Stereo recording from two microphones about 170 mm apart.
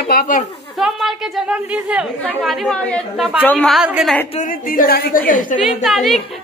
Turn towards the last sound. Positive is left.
turn(degrees=0)  # may be behind; listen again after turning